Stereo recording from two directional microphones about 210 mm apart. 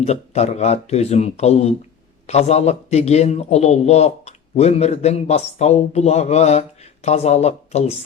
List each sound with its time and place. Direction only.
0.0 s a man's voice: 30° left (ahead or behind)